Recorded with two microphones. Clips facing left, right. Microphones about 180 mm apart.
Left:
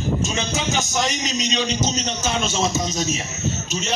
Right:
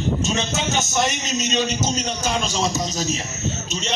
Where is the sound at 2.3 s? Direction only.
Centre (ahead or behind).